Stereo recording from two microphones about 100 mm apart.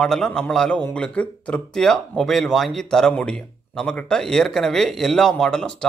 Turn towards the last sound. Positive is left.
turn(degrees=5)  # may be behind; listen again after turning